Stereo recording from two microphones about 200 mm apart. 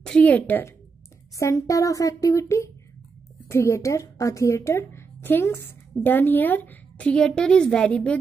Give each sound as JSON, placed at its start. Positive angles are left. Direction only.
{"t": 0.0, "sound": "a woman's voice", "side_deg": 5}